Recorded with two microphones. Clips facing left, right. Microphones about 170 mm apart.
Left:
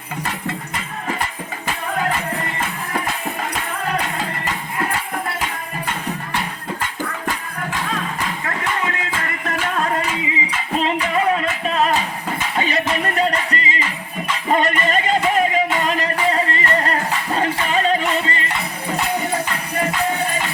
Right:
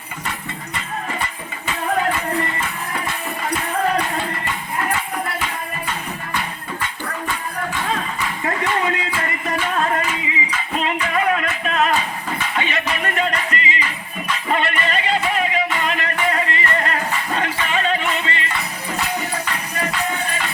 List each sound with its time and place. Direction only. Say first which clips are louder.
10.8 s music: left 2 dB; 30° left (ahead or behind)